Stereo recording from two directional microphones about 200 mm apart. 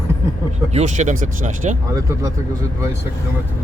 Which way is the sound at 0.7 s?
35° right (ahead or behind).